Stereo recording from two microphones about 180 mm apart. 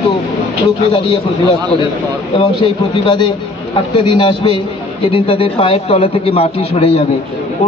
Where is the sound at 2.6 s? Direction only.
25° left (ahead or behind).